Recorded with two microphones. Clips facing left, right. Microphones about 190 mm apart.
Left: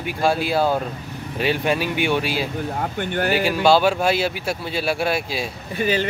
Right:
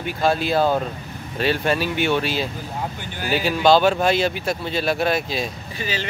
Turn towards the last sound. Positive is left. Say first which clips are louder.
# left 7 dB
turn(degrees=50)  # may be behind; listen again after turning